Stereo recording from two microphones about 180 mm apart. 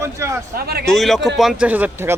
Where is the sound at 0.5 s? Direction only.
60° right (ahead or behind).